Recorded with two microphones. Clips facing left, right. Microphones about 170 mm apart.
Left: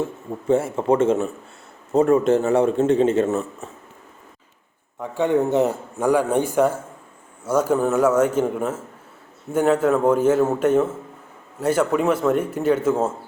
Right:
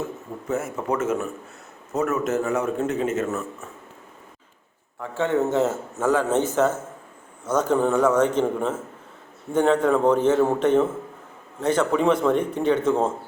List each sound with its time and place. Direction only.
0.0 s a man's voice: 30° left (ahead or behind)
4.9 s a man's voice: 15° left (ahead or behind)